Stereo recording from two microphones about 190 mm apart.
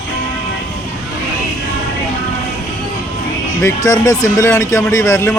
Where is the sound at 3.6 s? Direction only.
15° left (ahead or behind).